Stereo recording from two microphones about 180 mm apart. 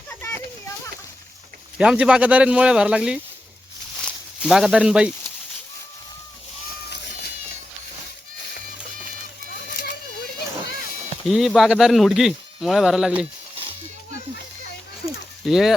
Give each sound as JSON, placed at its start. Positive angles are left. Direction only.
{"t": 1.8, "sound": "speech", "side_deg": -5}
{"t": 3.9, "sound": "snake", "side_deg": 0}
{"t": 6.9, "sound": "a sound", "side_deg": 65}
{"t": 11.3, "sound": "speech", "side_deg": 0}
{"t": 15.4, "sound": "speech", "side_deg": 0}